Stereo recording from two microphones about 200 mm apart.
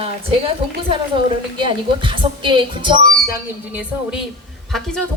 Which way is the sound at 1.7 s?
25° right (ahead or behind).